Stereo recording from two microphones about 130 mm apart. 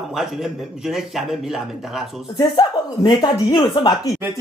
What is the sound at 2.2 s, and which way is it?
Speech, 35° left (ahead or behind).